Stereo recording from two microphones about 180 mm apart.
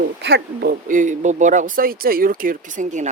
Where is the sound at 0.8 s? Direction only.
45° right (ahead or behind).